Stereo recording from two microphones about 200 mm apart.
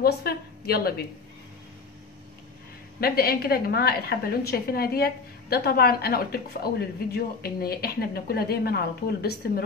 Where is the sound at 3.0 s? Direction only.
50° left (ahead or behind).